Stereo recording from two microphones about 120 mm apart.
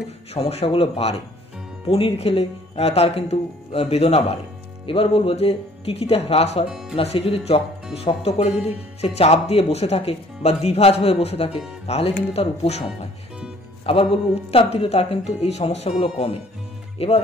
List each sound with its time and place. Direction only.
0.3 s speech: 60° left (ahead or behind)
6.7 s speech: 5° right (ahead or behind)
7.0 s speech: 55° left (ahead or behind)
13.8 s speech: 50° left (ahead or behind)